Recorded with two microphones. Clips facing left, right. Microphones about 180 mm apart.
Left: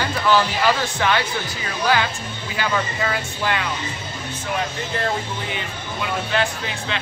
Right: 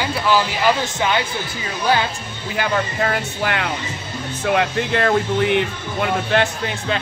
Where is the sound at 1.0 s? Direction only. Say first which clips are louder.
Right 1 dB; 20° right (ahead or behind).